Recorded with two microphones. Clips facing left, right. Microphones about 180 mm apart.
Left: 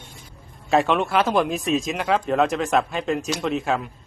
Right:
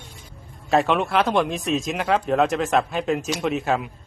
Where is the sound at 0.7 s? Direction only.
Centre (ahead or behind).